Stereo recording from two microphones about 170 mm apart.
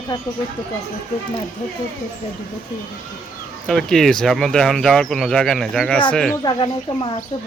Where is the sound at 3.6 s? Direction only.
5° left (ahead or behind).